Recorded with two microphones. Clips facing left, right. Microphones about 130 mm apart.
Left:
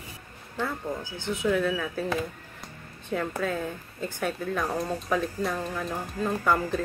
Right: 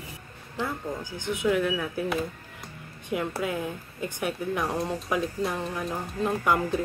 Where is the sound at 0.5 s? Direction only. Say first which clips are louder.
Even; 15° right (ahead or behind).